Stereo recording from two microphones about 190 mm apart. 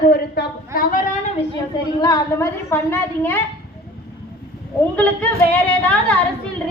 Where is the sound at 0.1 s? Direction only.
50° left (ahead or behind).